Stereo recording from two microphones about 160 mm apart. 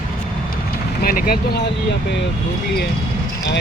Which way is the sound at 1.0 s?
65° left (ahead or behind).